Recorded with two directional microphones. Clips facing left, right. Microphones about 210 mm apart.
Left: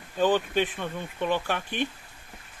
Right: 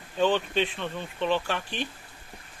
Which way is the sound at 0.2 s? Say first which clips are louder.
Left 1 dB; 10° left (ahead or behind).